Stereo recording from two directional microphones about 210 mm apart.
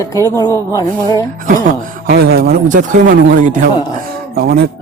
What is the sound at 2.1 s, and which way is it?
A man's voice, 45° right (ahead or behind).